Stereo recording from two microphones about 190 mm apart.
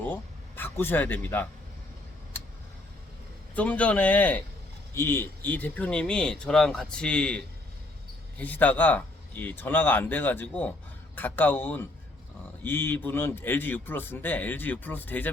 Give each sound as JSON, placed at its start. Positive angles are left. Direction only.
{"t": 0.0, "sound": "speech", "side_deg": 10}
{"t": 3.5, "sound": "a man's voice", "side_deg": 5}